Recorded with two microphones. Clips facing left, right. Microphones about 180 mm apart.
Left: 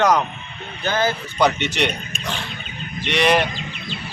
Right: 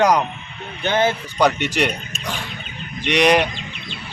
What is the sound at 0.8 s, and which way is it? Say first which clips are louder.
Speech: right 2 dB; 25° right (ahead or behind).